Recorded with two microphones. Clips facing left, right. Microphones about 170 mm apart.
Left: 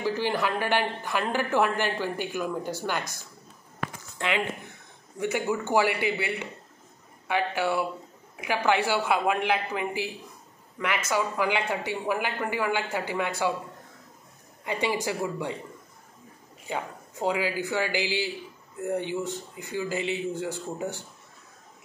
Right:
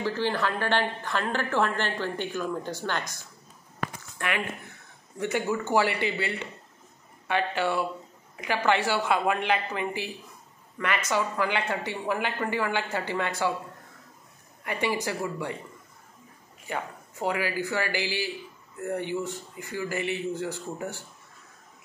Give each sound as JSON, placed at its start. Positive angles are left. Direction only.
{"t": 0.0, "sound": "a woman's voice", "side_deg": 15}
{"t": 4.2, "sound": "a woman's voice", "side_deg": 20}
{"t": 14.6, "sound": "a woman's voice", "side_deg": 15}
{"t": 16.6, "sound": "a woman's voice", "side_deg": 15}